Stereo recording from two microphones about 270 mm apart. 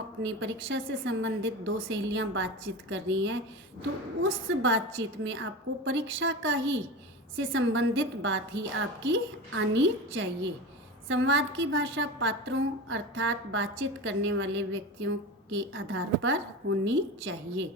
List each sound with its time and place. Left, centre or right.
0.2 s a woman's voice: right